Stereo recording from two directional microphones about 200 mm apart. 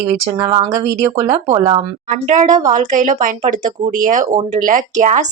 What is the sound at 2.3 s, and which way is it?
Speech, 40° right (ahead or behind).